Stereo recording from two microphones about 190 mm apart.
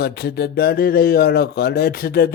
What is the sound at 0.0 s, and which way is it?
Speech, 60° left (ahead or behind).